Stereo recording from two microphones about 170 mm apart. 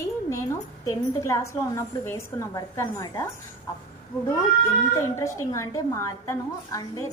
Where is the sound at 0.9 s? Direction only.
20° left (ahead or behind).